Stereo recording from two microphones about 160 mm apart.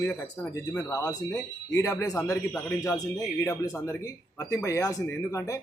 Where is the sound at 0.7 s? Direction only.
20° left (ahead or behind).